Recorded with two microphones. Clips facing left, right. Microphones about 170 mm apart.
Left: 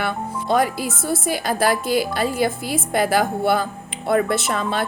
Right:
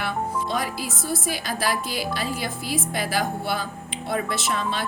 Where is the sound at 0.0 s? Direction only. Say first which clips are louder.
Left 2 dB; 55° left (ahead or behind).